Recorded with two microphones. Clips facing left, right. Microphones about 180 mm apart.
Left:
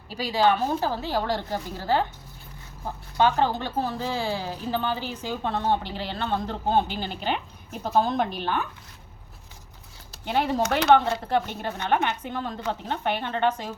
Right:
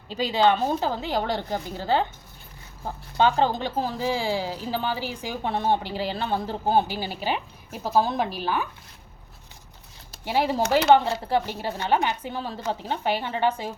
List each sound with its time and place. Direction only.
0.1 s a woman's voice: 20° right (ahead or behind)
3.2 s a woman's voice: 15° right (ahead or behind)
10.2 s a woman's voice: 10° right (ahead or behind)